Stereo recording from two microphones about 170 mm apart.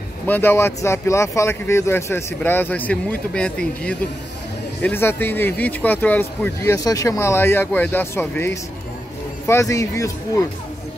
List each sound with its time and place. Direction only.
0.3 s speech: 15° left (ahead or behind)